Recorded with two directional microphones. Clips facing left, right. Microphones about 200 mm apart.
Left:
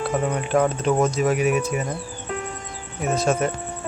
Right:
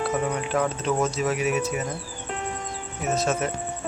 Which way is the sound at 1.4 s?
55° left (ahead or behind).